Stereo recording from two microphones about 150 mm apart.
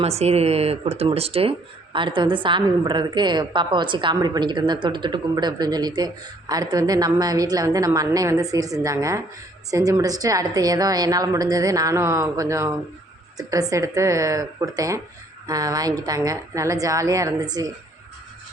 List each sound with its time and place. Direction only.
0.0 s a woman's voice: 45° right (ahead or behind); by 17.7 s 25° right (ahead or behind)